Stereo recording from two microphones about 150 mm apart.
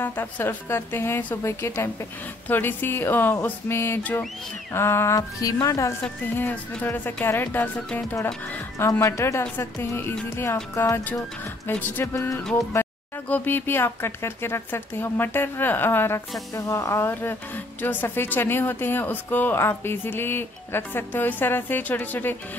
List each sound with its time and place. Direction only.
0.0 s speech: 15° left (ahead or behind)
6.0 s speech: 10° left (ahead or behind)